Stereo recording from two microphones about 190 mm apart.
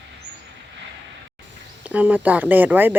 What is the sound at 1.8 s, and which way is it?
Speech, 10° right (ahead or behind).